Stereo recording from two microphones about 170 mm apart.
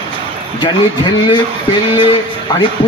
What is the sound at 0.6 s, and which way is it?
Speech, 25° left (ahead or behind).